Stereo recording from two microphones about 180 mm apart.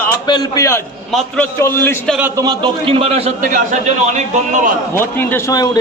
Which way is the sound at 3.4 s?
50° right (ahead or behind).